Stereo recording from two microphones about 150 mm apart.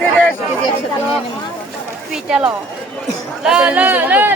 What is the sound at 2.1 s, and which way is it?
Speech, 5° right (ahead or behind).